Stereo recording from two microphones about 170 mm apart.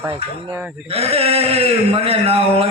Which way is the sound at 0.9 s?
35° right (ahead or behind).